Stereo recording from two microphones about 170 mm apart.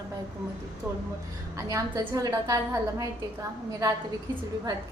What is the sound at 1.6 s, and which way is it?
A woman's voice, 20° right (ahead or behind).